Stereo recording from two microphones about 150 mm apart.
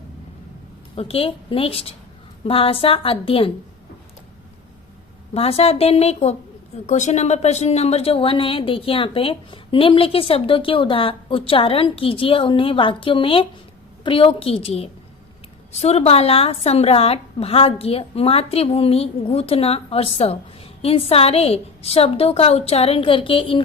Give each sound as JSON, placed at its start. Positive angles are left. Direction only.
{"t": 0.9, "sound": "speech", "side_deg": 40}
{"t": 5.3, "sound": "a woman's voice", "side_deg": 40}